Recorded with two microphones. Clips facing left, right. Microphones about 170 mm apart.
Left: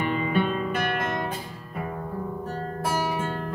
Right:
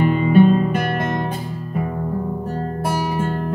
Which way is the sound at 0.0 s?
35° right (ahead or behind).